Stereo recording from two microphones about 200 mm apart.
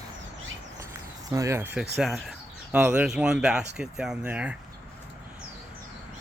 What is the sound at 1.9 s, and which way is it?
Speech, centre (ahead or behind).